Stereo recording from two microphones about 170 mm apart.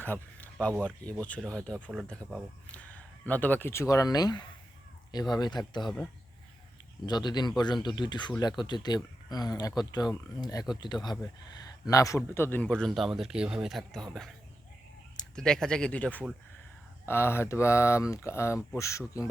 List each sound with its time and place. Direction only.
0.0 s a sound: 10° left (ahead or behind)
1.2 s a man's voice: 5° left (ahead or behind)
2.1 s speech: 5° left (ahead or behind); by 5.9 s 25° left (ahead or behind)
7.0 s a man's voice: 25° left (ahead or behind)